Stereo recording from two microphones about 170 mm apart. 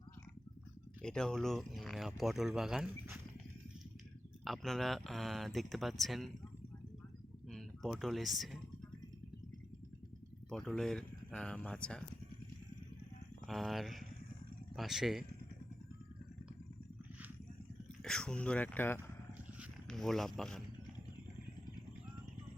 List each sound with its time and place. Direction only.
1.0 s speech: 5° left (ahead or behind)
4.4 s speech: centre (ahead or behind)
7.4 s speech: centre (ahead or behind)
10.5 s speech: centre (ahead or behind)
13.5 s speech: centre (ahead or behind)
18.0 s speech: 5° left (ahead or behind)